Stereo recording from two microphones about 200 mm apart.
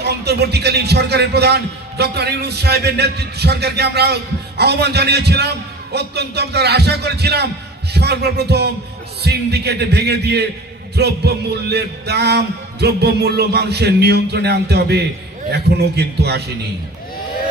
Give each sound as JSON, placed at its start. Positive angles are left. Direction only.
{"t": 0.0, "sound": "a man's voice", "side_deg": -55}